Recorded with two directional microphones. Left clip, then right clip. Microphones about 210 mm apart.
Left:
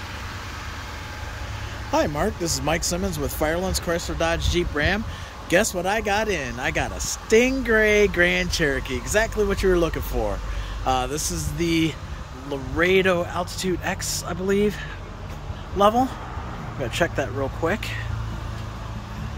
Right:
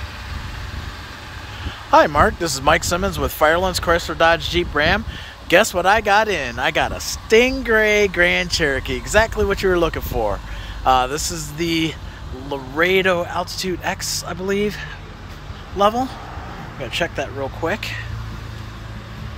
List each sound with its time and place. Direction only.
1.9 s speech: centre (ahead or behind)